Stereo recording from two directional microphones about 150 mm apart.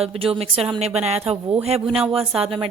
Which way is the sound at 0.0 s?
40° right (ahead or behind).